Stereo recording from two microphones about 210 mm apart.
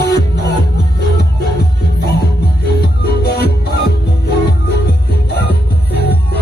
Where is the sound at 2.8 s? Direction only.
50° left (ahead or behind).